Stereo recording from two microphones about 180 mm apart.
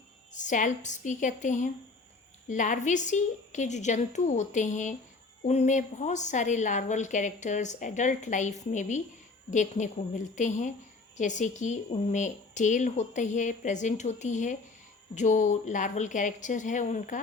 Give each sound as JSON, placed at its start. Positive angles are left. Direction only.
{"t": 0.3, "sound": "a woman's voice", "side_deg": 45}